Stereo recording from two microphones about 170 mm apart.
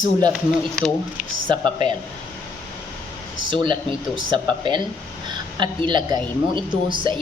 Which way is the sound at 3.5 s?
30° right (ahead or behind).